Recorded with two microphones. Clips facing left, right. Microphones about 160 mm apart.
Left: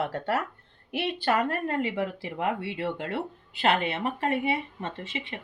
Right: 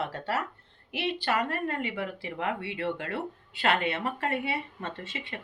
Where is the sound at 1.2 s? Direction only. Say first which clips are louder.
Left 4 dB; 40° left (ahead or behind).